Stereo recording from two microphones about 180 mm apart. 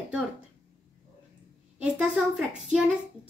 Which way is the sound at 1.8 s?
5° right (ahead or behind).